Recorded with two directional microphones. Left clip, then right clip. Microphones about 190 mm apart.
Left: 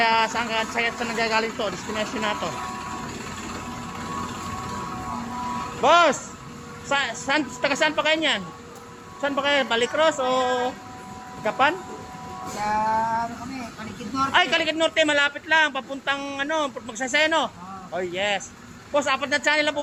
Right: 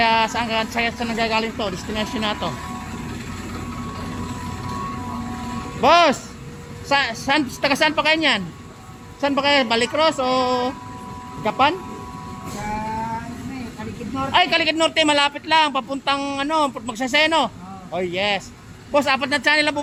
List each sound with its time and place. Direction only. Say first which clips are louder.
0.0 s speech: right 3 dB; 25° right (ahead or behind)
5.8 s a man's voice: right 3 dB; 35° right (ahead or behind)
14.3 s a man's voice: right 4 dB; 35° right (ahead or behind)